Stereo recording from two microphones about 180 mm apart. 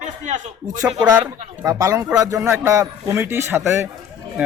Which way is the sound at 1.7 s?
20° right (ahead or behind).